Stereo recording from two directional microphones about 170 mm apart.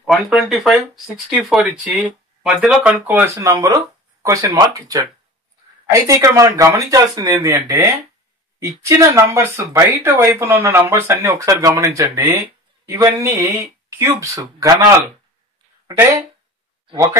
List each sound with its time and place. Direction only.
0.0 s speech: centre (ahead or behind); by 14.9 s 20° right (ahead or behind)
16.0 s speech: 20° right (ahead or behind)